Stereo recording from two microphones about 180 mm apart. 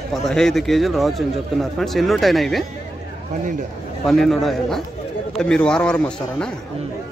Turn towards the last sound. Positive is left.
turn(degrees=5)  # may be behind; listen again after turning